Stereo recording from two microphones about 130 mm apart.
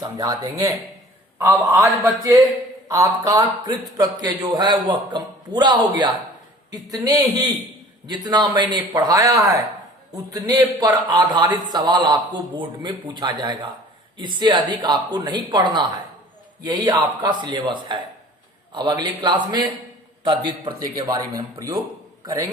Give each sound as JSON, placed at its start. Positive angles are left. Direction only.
{"t": 0.0, "sound": "a man's voice", "side_deg": -25}